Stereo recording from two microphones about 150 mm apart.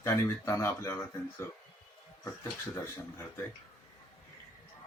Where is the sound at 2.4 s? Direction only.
15° left (ahead or behind).